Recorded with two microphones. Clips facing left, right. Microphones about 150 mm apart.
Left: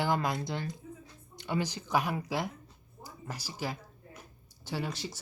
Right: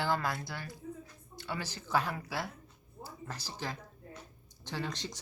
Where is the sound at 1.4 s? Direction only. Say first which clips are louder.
Left 7 dB; 20° left (ahead or behind).